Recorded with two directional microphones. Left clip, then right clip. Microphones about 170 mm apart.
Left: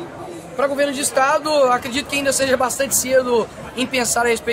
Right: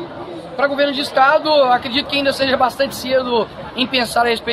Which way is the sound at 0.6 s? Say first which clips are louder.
Right 2 dB; 15° left (ahead or behind).